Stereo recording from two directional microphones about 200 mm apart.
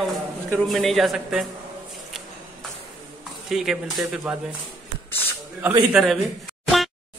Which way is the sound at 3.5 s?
Centre (ahead or behind).